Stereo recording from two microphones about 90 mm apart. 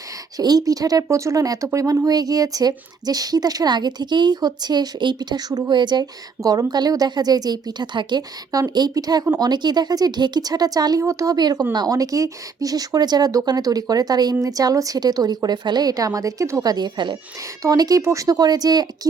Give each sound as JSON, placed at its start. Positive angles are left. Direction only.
{"t": 0.3, "sound": "speech", "side_deg": -45}
{"t": 11.0, "sound": "speech", "side_deg": -35}
{"t": 16.7, "sound": "speech", "side_deg": -55}
{"t": 17.6, "sound": "speech", "side_deg": -45}